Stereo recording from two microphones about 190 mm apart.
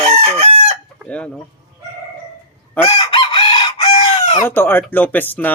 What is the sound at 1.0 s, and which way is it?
Speech, 5° left (ahead or behind).